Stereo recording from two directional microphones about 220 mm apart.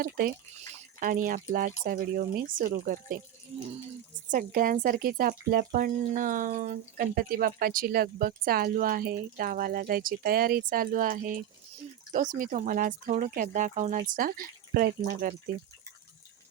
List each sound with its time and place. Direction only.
0.0 s speech: 40° right (ahead or behind)
4.3 s speech: 40° right (ahead or behind)